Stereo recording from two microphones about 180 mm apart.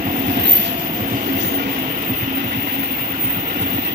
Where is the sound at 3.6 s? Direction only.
65° right (ahead or behind).